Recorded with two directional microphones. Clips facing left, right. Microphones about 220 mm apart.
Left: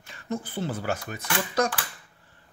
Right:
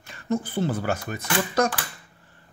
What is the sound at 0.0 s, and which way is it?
Speech, 50° right (ahead or behind).